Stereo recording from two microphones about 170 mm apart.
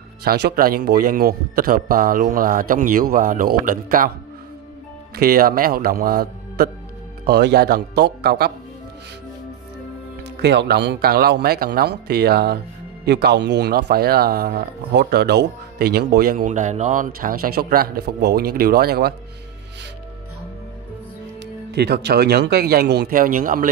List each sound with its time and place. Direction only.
0.2 s speech: 75° right (ahead or behind); by 4.1 s 55° right (ahead or behind)
5.1 s a man's voice: 60° right (ahead or behind)
10.4 s a man's voice: 85° right; by 12.5 s 65° right (ahead or behind)
13.0 s speech: 80° right; by 19.1 s 65° right (ahead or behind)
21.7 s a man's voice: 75° right (ahead or behind); by 23.7 s 55° right (ahead or behind)